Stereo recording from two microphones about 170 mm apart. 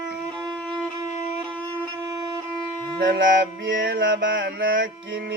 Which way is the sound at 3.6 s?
90° right.